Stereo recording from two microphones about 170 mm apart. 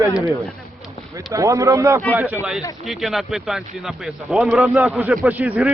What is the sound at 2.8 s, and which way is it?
Speech, centre (ahead or behind).